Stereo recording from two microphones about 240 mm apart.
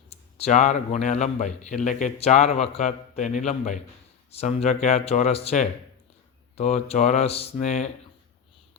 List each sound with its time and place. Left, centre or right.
0.1 s a man's voice: left